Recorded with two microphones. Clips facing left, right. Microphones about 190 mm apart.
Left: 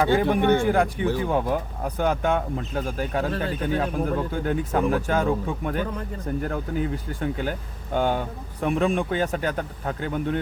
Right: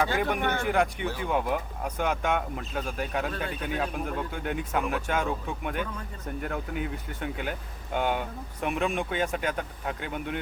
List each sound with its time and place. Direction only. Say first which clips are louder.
0.0 s speech: left 7 dB; 30° left (ahead or behind)